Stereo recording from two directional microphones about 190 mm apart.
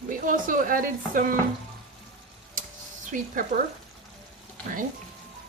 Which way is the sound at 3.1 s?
40° right (ahead or behind).